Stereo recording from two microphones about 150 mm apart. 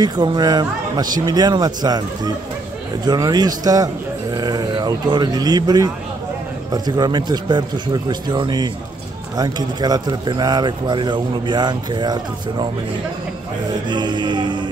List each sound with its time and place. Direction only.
0.0 s speech: 30° right (ahead or behind)
13.8 s music: 30° right (ahead or behind)